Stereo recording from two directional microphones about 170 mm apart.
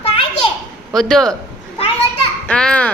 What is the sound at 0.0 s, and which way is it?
Children playing, 35° left (ahead or behind).